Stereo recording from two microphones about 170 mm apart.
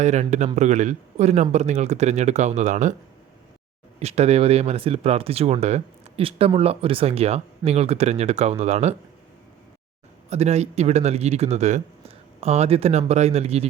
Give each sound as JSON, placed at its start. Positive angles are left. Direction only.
{"t": 0.0, "sound": "speech", "side_deg": -40}
{"t": 4.0, "sound": "speech", "side_deg": -40}
{"t": 10.2, "sound": "speech", "side_deg": -40}